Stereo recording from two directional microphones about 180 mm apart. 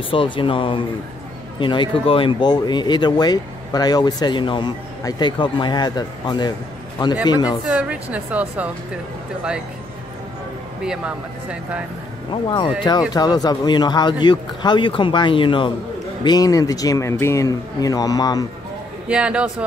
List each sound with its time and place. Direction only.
0.1 s speech: 30° left (ahead or behind)
7.6 s a woman's voice: 5° right (ahead or behind)
10.8 s speech: 5° right (ahead or behind)
12.3 s speech: 25° left (ahead or behind)
19.0 s speech: 5° right (ahead or behind)